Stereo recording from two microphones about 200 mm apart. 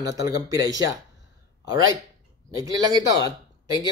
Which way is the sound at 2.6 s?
20° right (ahead or behind).